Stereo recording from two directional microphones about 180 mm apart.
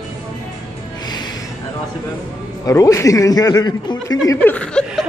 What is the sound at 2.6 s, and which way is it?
Speech, 15° left (ahead or behind).